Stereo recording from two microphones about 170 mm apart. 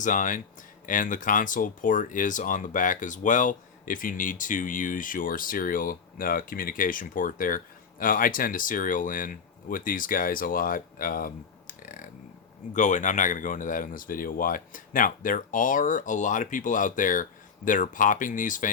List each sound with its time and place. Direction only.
0.0 s speech: 50° left (ahead or behind)
11.8 s a sound: 50° left (ahead or behind)
12.7 s speech: 45° left (ahead or behind)